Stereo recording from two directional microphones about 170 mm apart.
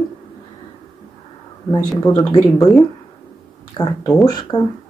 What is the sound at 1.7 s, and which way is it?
Speech, 20° left (ahead or behind).